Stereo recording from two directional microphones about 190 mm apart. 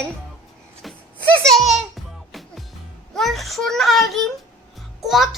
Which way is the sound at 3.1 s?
Centre (ahead or behind).